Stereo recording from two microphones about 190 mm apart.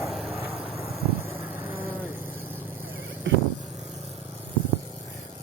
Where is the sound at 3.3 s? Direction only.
75° right (ahead or behind).